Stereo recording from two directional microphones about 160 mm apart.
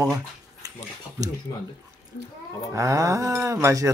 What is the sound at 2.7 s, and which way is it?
Speech, 20° right (ahead or behind).